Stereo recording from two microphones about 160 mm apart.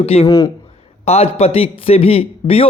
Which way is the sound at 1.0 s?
40° left (ahead or behind).